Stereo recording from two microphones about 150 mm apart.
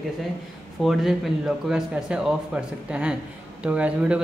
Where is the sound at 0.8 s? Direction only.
Centre (ahead or behind).